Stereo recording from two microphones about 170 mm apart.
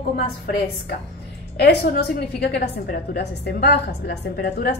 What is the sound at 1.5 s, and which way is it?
A woman's voice, 65° left (ahead or behind).